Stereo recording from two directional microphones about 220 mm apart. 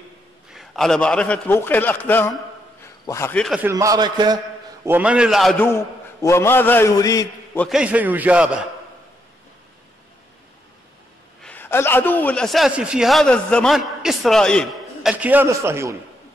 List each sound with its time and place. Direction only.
0.5 s a man's voice: centre (ahead or behind)
3.7 s a man's voice: 15° right (ahead or behind)
4.8 s a man's voice: 5° right (ahead or behind); by 7.6 s 15° left (ahead or behind)
7.6 s a man's voice: 5° right (ahead or behind)
11.4 s a man's voice: 10° left (ahead or behind); by 16.0 s 10° right (ahead or behind)